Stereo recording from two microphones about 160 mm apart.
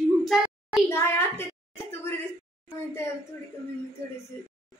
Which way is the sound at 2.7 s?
15° left (ahead or behind).